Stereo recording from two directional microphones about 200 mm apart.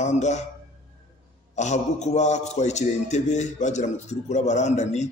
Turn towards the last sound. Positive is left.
turn(degrees=35)  # may be behind; listen again after turning